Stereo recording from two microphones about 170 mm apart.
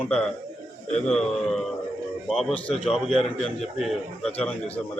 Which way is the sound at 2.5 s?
35° left (ahead or behind).